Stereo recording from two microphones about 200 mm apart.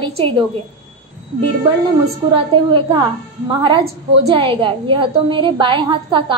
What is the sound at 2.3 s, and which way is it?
Speech, 25° right (ahead or behind).